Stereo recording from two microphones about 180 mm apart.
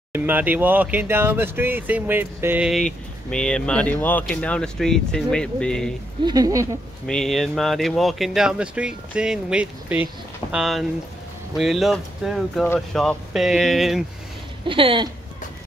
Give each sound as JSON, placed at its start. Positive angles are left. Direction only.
{"t": 0.1, "sound": "speech", "side_deg": -10}
{"t": 3.3, "sound": "speech", "side_deg": 5}
{"t": 6.2, "sound": "speech", "side_deg": -20}
{"t": 7.1, "sound": "speech", "side_deg": 0}
{"t": 14.7, "sound": "speech", "side_deg": -30}